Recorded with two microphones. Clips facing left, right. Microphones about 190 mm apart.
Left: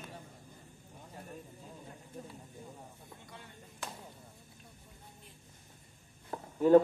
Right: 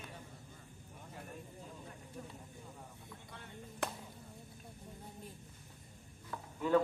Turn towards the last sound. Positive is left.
turn(degrees=40)  # may be behind; listen again after turning